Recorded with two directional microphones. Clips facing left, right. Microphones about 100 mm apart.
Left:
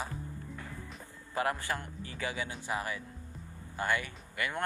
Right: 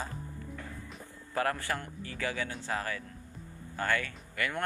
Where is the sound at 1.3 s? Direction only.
20° left (ahead or behind).